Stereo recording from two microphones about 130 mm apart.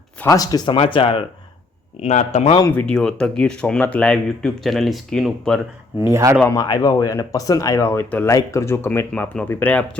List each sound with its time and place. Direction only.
0.3 s speech: 30° left (ahead or behind)
2.0 s speech: 60° left (ahead or behind)
2.7 s speech: 5° left (ahead or behind)
6.0 s speech: 20° right (ahead or behind)
6.5 s speech: 30° left (ahead or behind); by 10.0 s 10° left (ahead or behind)